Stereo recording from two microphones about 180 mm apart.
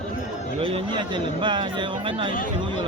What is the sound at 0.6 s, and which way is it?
A man's voice, 30° right (ahead or behind).